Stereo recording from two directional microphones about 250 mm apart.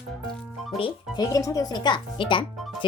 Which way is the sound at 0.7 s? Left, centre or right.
Centre.